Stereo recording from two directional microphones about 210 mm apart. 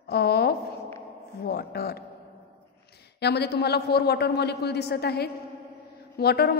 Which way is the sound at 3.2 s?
50° left (ahead or behind).